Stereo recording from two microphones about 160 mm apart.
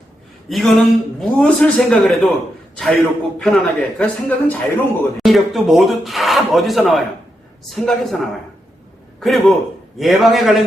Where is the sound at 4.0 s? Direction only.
10° left (ahead or behind).